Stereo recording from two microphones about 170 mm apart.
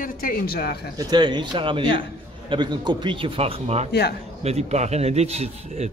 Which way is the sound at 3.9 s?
75° left (ahead or behind).